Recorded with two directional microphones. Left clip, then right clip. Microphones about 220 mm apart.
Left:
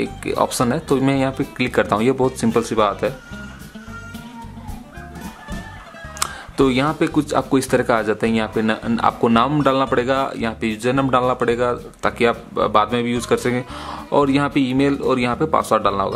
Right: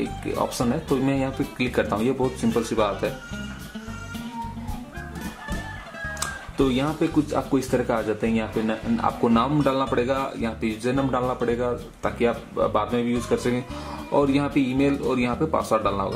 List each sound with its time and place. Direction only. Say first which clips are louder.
0.2 s speech: left 7 dB; 25° left (ahead or behind)
6.1 s music: left 6 dB; 20° left (ahead or behind)
6.8 s speech: left 5 dB; 30° left (ahead or behind)